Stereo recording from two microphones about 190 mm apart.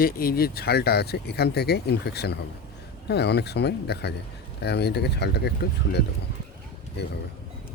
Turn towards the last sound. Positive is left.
turn(degrees=60)  # may be behind; listen again after turning